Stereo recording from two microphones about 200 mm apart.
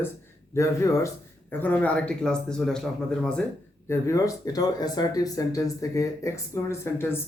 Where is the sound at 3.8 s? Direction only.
15° left (ahead or behind).